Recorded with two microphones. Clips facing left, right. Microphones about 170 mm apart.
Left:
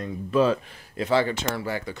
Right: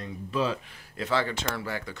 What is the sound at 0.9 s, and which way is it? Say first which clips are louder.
Speech: left 5 dB; 15° left (ahead or behind).